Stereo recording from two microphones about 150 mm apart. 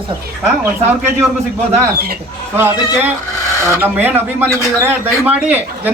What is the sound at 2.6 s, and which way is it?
A man's voice, 15° right (ahead or behind).